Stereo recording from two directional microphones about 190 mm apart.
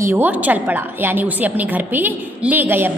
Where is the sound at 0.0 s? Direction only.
10° right (ahead or behind).